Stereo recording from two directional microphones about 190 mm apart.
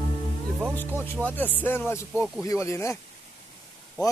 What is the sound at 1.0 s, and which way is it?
Speech, 10° left (ahead or behind).